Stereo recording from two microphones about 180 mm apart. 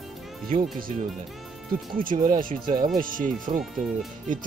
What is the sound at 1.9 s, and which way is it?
Speech, 50° right (ahead or behind).